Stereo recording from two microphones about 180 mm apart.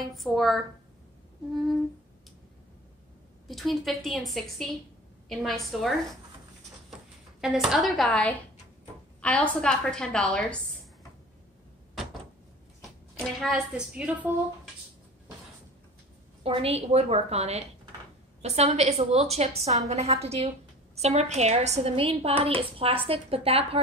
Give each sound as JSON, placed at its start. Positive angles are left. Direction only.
{"t": 0.1, "sound": "a woman's voice", "side_deg": 0}
{"t": 3.4, "sound": "a woman's voice", "side_deg": 0}
{"t": 13.2, "sound": "a woman's voice", "side_deg": 0}
{"t": 16.4, "sound": "a woman's voice", "side_deg": -35}